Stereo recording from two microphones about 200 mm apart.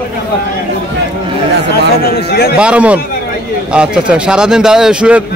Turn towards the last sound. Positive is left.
turn(degrees=-5)  # may be behind; listen again after turning